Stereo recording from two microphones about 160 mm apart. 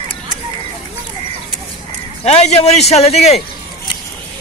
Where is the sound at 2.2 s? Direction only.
40° left (ahead or behind).